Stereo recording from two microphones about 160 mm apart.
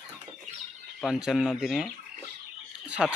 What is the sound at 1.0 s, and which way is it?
Speech, centre (ahead or behind).